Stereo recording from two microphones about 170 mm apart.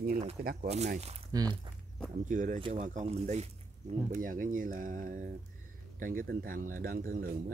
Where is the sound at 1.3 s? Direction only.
20° right (ahead or behind).